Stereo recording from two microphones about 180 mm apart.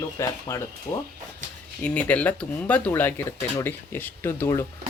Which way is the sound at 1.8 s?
5° left (ahead or behind).